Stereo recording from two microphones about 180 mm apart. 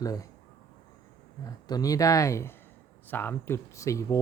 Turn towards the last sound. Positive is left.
turn(degrees=15)  # may be behind; listen again after turning